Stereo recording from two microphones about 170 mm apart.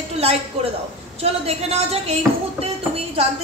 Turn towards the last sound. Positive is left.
turn(degrees=-35)  # may be behind; listen again after turning